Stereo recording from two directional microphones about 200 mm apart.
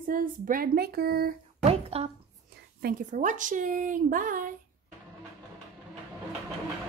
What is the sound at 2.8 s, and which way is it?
A woman's voice, 45° right (ahead or behind).